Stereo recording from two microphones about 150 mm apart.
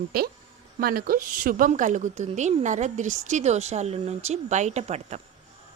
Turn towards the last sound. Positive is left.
turn(degrees=-45)  # may be behind; listen again after turning